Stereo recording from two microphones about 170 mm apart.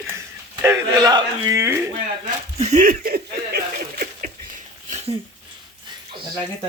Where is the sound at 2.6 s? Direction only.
40° right (ahead or behind).